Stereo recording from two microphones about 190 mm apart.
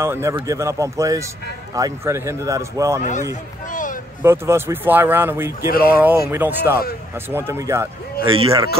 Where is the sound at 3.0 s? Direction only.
40° left (ahead or behind).